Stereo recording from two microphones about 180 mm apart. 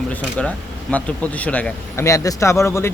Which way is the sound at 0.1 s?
5° left (ahead or behind).